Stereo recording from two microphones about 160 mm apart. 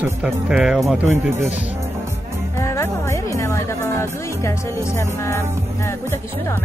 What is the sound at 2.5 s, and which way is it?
Music, 15° left (ahead or behind).